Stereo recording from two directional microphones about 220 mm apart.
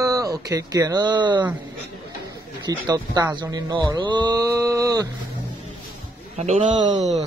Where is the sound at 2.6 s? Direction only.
15° right (ahead or behind).